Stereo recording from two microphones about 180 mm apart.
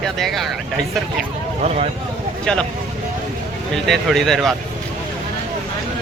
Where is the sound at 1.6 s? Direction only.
35° right (ahead or behind).